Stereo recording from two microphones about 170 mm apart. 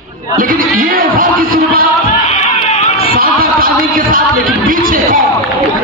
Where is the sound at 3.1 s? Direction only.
60° right (ahead or behind).